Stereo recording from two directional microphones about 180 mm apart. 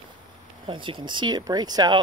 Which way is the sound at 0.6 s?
30° right (ahead or behind).